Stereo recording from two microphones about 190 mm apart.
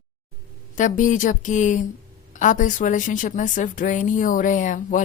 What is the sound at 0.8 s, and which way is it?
A woman's voice, 40° left (ahead or behind).